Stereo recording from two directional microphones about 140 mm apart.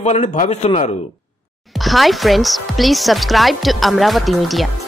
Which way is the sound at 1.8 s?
Centre (ahead or behind).